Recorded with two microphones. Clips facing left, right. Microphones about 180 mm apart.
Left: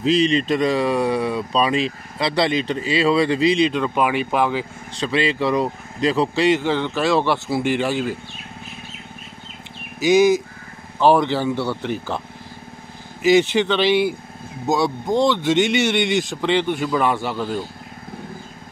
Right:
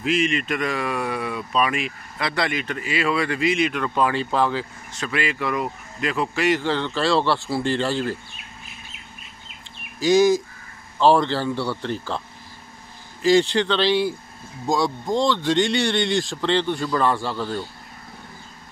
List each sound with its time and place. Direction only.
0.0 s speech: 30° left (ahead or behind)
5.0 s speech: 25° left (ahead or behind)
6.6 s speech: 15° left (ahead or behind)
9.9 s speech: 20° left (ahead or behind)
13.2 s speech: 20° left (ahead or behind)